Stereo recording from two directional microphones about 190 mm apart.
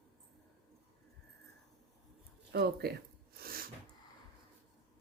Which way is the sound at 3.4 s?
50° right (ahead or behind).